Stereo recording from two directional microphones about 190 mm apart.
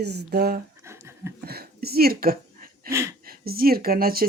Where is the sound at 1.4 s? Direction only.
55° right (ahead or behind).